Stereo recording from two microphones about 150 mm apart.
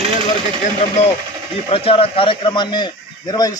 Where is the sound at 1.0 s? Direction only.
50° left (ahead or behind); by 3.5 s 25° left (ahead or behind).